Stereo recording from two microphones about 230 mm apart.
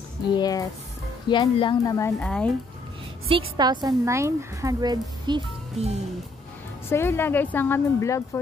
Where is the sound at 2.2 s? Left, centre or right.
Centre.